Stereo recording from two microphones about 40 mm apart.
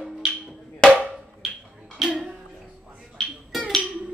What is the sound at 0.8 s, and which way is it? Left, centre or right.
Drum, left.